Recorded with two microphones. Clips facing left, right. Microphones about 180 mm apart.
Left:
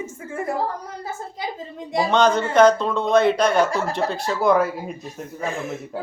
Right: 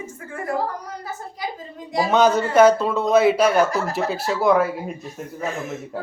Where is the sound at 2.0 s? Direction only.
5° right (ahead or behind).